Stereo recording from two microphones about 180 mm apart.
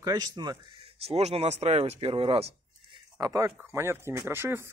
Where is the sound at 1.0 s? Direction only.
35° right (ahead or behind).